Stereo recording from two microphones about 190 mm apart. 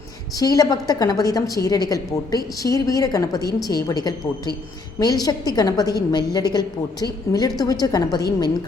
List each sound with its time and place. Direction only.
0.3 s a woman's voice: 20° left (ahead or behind)